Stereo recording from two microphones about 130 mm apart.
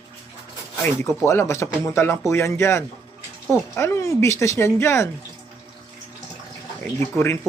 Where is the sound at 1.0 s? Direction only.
20° left (ahead or behind).